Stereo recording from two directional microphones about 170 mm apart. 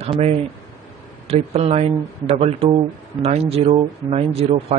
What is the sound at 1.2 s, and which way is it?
Speech, 35° right (ahead or behind).